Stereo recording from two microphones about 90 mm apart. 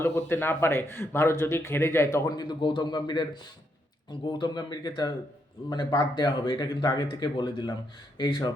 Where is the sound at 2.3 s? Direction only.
55° left (ahead or behind).